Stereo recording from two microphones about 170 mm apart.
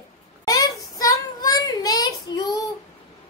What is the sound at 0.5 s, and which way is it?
Child singing, 20° left (ahead or behind).